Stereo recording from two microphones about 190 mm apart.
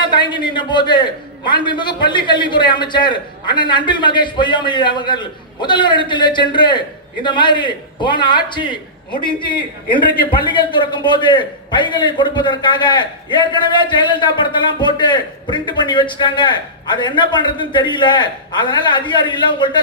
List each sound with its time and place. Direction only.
0.0 s a man's voice: 25° left (ahead or behind)